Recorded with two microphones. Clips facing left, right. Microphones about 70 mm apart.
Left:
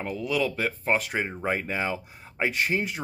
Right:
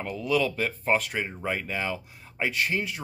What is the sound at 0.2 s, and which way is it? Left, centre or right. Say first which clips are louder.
Speech: right 2 dB; centre.